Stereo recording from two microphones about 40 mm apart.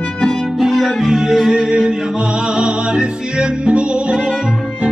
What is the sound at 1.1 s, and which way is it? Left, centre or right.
Music, centre.